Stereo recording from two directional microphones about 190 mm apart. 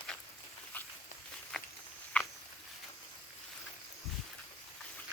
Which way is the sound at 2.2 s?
5° left (ahead or behind).